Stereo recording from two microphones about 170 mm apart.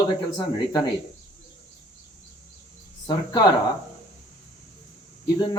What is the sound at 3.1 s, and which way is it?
Speech, 25° left (ahead or behind).